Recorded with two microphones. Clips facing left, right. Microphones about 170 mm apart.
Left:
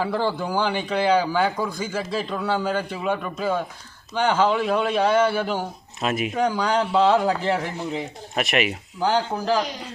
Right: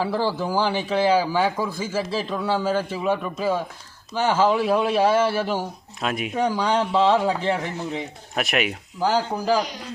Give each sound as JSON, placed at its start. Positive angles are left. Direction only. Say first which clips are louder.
{"t": 0.0, "sound": "a man's voice", "louder": "even", "side_deg": -5}